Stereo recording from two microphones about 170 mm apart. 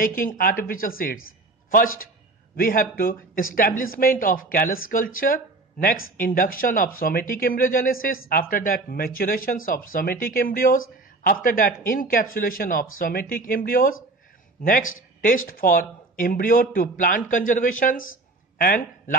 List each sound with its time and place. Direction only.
0.0 s speech: 55° left (ahead or behind)